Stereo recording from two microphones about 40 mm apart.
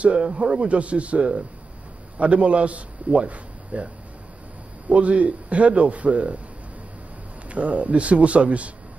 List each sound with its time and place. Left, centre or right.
0.0 s a man's voice: right
7.4 s a man's voice: right